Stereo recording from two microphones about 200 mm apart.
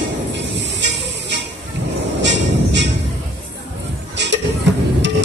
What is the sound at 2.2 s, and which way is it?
Music, 65° right (ahead or behind).